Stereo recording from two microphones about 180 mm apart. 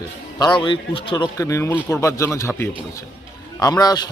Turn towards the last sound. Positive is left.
turn(degrees=20)  # may be behind; listen again after turning